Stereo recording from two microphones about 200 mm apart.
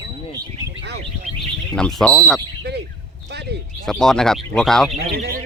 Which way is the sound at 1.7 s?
5° left (ahead or behind).